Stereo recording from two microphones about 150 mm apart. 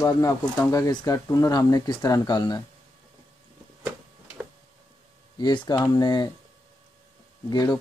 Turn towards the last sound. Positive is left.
turn(degrees=25)  # may be behind; listen again after turning